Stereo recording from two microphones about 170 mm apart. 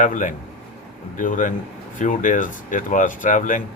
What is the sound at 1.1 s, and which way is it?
Speech, 50° left (ahead or behind).